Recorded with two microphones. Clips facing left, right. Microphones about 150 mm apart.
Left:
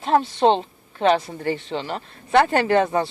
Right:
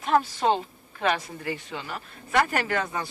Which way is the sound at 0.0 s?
25° left (ahead or behind).